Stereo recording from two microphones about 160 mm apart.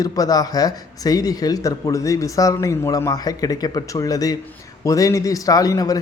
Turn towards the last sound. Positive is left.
turn(degrees=20)  # may be behind; listen again after turning